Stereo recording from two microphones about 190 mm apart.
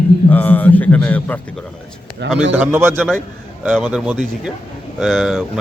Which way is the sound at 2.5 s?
10° right (ahead or behind).